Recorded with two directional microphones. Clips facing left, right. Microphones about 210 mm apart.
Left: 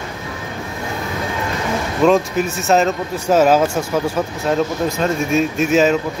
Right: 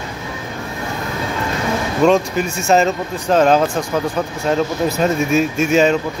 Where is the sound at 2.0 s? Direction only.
Centre (ahead or behind).